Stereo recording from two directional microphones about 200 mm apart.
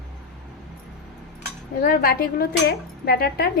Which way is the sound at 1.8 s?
45° left (ahead or behind).